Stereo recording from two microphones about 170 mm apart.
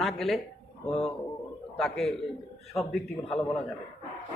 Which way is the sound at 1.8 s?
5° left (ahead or behind).